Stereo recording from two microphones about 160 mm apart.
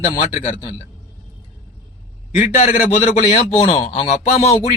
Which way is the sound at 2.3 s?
50° left (ahead or behind).